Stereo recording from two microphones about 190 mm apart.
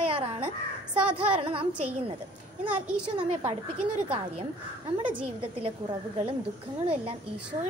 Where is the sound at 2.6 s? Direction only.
5° right (ahead or behind).